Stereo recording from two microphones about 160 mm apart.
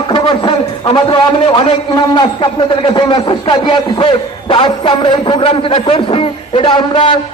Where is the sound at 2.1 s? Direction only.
30° left (ahead or behind).